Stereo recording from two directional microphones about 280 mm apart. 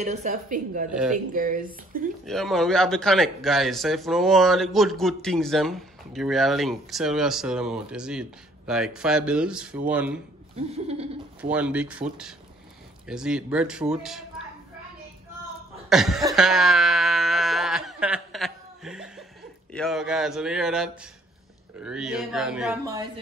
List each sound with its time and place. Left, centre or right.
0.0 s speech: right
2.2 s speech: centre
10.7 s speech: right
11.5 s speech: centre
15.9 s a sound: centre
19.7 s speech: centre